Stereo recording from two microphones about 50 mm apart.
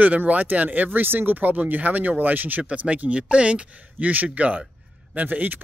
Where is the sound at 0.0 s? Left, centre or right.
Right.